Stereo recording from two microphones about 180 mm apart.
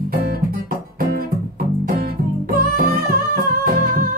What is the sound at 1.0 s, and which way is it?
Music, 55° right (ahead or behind).